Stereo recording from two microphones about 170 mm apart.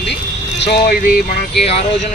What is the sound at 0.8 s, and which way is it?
Music, 60° left (ahead or behind).